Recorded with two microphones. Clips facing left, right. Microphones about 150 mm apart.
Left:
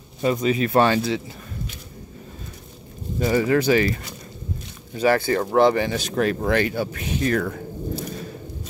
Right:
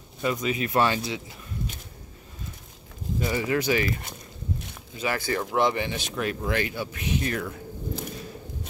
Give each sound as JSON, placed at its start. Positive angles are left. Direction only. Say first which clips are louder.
{"t": 0.2, "sound": "speech", "louder": "left 6 dB", "side_deg": 30}
{"t": 3.2, "sound": "speech", "louder": "left 7 dB", "side_deg": 40}
{"t": 4.9, "sound": "speech", "louder": "left 8 dB", "side_deg": 35}